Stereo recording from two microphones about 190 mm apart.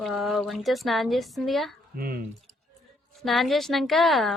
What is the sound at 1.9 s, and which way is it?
Speech, 50° right (ahead or behind).